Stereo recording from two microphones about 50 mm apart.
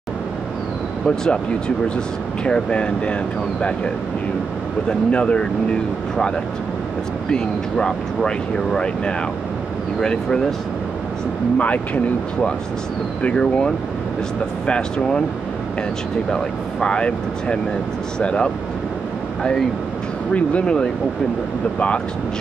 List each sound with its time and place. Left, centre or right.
1.0 s speech: centre
2.4 s speech: left
4.8 s speech: left
11.5 s speech: left
13.2 s speech: centre
16.8 s speech: centre
20.3 s speech: left